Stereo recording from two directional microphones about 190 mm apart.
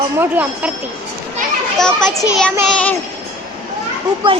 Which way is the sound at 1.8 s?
Centre (ahead or behind).